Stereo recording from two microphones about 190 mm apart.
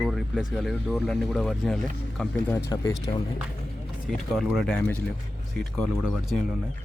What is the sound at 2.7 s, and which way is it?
Speech, 15° left (ahead or behind).